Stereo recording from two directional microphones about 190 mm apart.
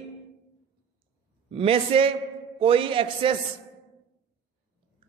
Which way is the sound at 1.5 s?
30° right (ahead or behind).